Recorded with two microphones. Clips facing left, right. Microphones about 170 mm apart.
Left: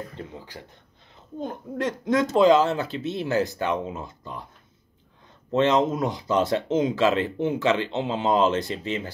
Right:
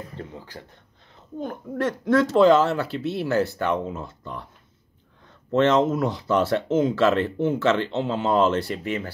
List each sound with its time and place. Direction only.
1.4 s speech: 20° left (ahead or behind)
5.5 s speech: 15° left (ahead or behind)